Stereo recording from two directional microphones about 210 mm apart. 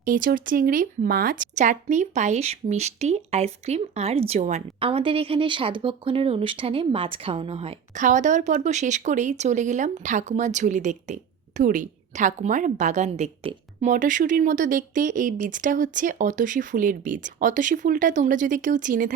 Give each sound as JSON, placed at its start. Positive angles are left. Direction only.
{"t": 0.0, "sound": "speech", "side_deg": -40}
{"t": 8.0, "sound": "speech", "side_deg": -35}